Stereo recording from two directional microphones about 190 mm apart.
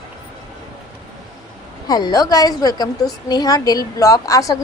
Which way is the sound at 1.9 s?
20° left (ahead or behind).